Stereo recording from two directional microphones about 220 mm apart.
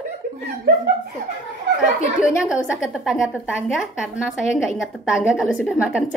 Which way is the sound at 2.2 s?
5° right (ahead or behind).